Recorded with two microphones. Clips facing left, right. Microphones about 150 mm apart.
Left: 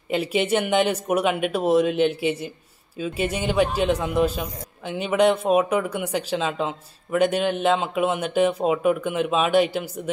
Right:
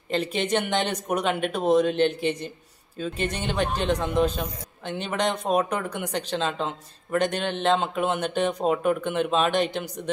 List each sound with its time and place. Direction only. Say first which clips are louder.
0.1 s a man's voice: left 3 dB; 10° left (ahead or behind)